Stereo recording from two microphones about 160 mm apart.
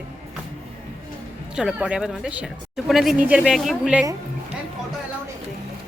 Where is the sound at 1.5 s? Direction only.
5° right (ahead or behind).